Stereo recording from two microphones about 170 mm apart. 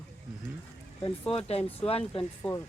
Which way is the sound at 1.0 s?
35° left (ahead or behind).